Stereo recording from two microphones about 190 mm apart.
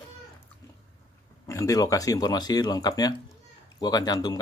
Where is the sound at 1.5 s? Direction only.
20° left (ahead or behind).